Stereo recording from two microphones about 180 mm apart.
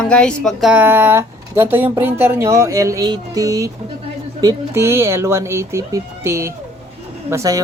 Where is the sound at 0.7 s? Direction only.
10° right (ahead or behind).